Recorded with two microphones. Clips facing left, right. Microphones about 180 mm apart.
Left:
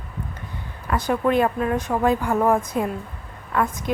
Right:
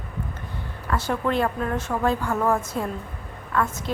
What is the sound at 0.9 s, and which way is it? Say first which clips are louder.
A woman's voice: left 4 dB; 15° left (ahead or behind).